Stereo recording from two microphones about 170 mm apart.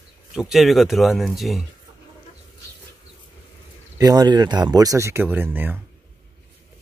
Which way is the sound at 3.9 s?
20° right (ahead or behind).